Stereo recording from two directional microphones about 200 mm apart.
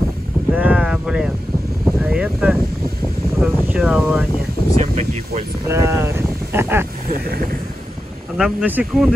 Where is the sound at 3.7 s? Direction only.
5° right (ahead or behind).